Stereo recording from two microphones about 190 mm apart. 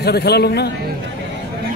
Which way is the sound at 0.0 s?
60° left (ahead or behind).